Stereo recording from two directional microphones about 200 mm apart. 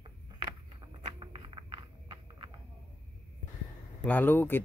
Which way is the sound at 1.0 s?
25° right (ahead or behind).